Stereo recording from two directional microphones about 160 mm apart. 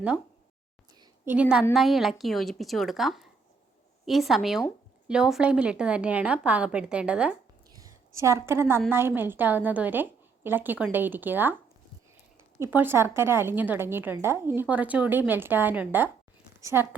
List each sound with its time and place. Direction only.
1.2 s a woman's voice: 10° right (ahead or behind)
7.7 s a sound: 20° right (ahead or behind)
8.9 s a woman's voice: 15° right (ahead or behind)
12.5 s a woman's voice: 15° right (ahead or behind)